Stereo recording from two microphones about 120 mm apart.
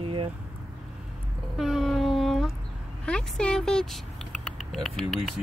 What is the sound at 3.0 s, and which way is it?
Speech, 10° left (ahead or behind).